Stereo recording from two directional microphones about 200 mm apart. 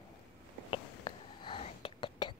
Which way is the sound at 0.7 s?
25° left (ahead or behind).